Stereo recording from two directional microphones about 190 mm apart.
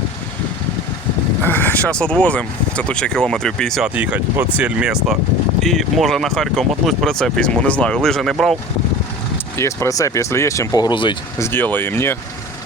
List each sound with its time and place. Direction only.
1.4 s speech: 10° left (ahead or behind)
9.6 s speech: 15° left (ahead or behind)
11.3 s speech: 15° left (ahead or behind)